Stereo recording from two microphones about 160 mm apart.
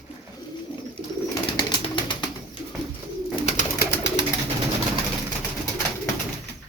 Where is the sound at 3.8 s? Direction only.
90° left.